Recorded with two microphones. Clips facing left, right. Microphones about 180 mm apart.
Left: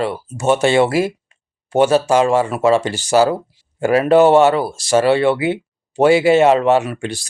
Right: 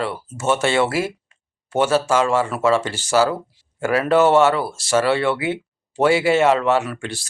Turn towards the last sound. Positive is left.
turn(degrees=15)  # may be behind; listen again after turning